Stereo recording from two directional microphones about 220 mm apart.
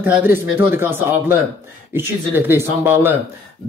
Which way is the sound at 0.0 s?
10° right (ahead or behind).